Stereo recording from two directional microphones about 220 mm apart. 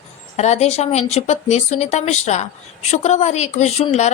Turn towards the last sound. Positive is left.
turn(degrees=30)  # may be behind; listen again after turning